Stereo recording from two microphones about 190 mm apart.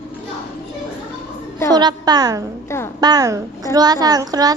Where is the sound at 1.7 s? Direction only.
20° right (ahead or behind).